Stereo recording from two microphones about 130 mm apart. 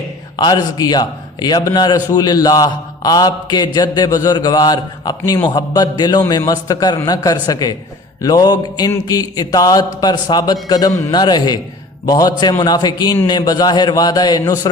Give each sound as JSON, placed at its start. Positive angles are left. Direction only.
{"t": 0.3, "sound": "a man's voice", "side_deg": 30}